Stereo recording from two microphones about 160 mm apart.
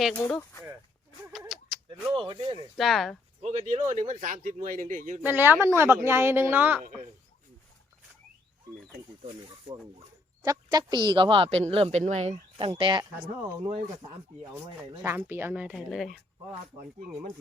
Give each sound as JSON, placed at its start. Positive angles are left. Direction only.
{"t": 0.0, "sound": "speech", "side_deg": 5}
{"t": 1.3, "sound": "a sound", "side_deg": 0}
{"t": 2.2, "sound": "speech", "side_deg": -30}
{"t": 2.7, "sound": "speech", "side_deg": 0}
{"t": 3.4, "sound": "a man's voice", "side_deg": -40}
{"t": 5.2, "sound": "speech", "side_deg": -10}
{"t": 10.4, "sound": "speech", "side_deg": -25}
{"t": 12.5, "sound": "speech", "side_deg": -35}
{"t": 15.0, "sound": "speech", "side_deg": -15}